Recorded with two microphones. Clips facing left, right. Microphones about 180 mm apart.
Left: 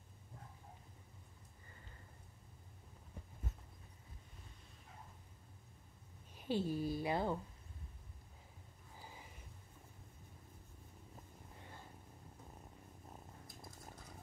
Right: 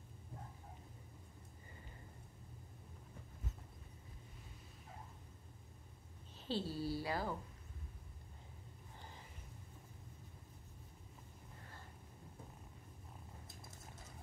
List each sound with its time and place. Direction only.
6.3 s a woman's voice: 15° left (ahead or behind)